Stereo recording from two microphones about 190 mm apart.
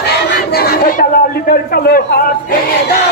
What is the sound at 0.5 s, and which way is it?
A man's voice, 55° left (ahead or behind).